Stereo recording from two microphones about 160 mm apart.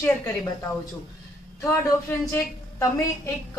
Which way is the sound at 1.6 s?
20° left (ahead or behind).